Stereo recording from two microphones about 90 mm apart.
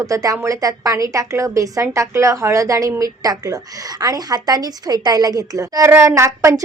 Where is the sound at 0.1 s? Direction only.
40° right (ahead or behind).